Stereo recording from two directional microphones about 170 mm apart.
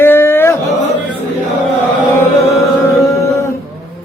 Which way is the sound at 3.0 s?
15° left (ahead or behind).